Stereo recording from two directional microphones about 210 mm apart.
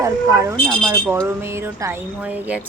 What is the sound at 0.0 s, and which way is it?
Speech, 15° right (ahead or behind).